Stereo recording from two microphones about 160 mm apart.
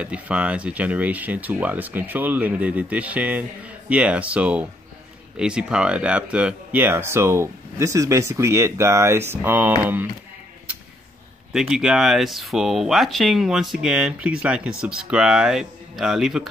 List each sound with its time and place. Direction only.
0.0 s speech: 5° right (ahead or behind)
11.5 s speech: 5° right (ahead or behind)